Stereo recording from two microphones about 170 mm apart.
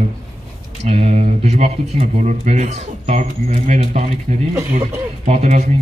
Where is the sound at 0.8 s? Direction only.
40° right (ahead or behind).